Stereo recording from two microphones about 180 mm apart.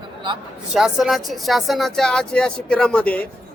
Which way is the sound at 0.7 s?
Centre (ahead or behind).